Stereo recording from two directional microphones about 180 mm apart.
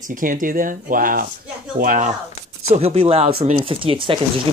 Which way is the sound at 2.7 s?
35° right (ahead or behind).